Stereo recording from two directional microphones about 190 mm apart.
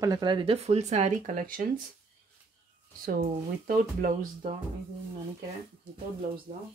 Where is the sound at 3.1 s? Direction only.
50° right (ahead or behind).